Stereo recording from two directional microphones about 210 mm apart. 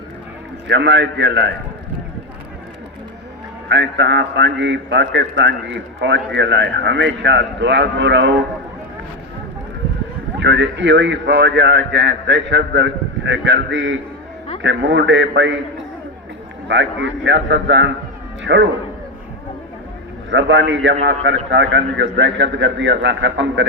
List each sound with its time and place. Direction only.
0.7 s a man's voice: 55° right (ahead or behind)
3.7 s a man's voice: 60° right (ahead or behind)
10.4 s a man's voice: 55° right (ahead or behind)
16.6 s a man's voice: 60° right (ahead or behind)
20.3 s a man's voice: 60° right (ahead or behind)